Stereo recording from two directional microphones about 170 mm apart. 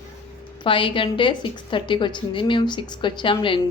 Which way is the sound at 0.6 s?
30° left (ahead or behind).